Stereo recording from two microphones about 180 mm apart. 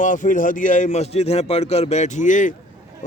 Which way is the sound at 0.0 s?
45° left (ahead or behind).